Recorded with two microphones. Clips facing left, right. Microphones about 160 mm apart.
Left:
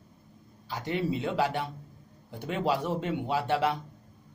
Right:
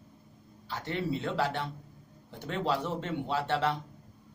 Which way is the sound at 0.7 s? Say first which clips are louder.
Left 3 dB; 15° left (ahead or behind).